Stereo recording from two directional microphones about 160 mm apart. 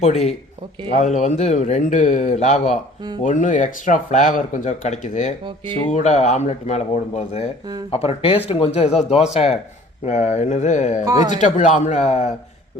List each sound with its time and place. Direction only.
0.0 s speech: 45° left (ahead or behind)
11.0 s a man's voice: 25° right (ahead or behind)
11.3 s speech: 50° left (ahead or behind)